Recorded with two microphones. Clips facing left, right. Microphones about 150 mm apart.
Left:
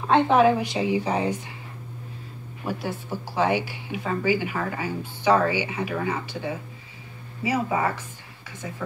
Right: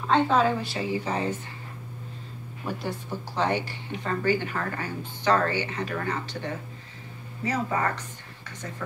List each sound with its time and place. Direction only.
0.0 s speech: 15° left (ahead or behind)
2.6 s speech: 5° left (ahead or behind)